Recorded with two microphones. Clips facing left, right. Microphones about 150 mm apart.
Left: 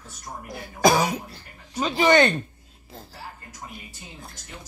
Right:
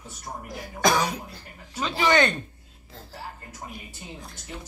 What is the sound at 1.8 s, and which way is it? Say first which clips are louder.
Speech: left 4 dB; 40° left (ahead or behind).